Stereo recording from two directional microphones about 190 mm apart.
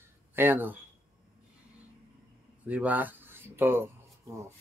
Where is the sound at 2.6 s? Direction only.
10° right (ahead or behind).